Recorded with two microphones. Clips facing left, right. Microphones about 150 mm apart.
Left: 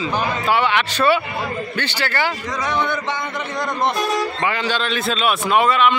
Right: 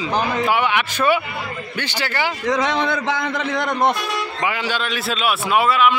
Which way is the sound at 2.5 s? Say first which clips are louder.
Right 3 dB; 90° right.